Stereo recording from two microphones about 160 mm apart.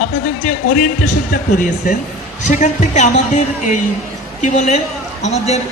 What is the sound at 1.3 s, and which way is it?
A man's voice, 55° left (ahead or behind).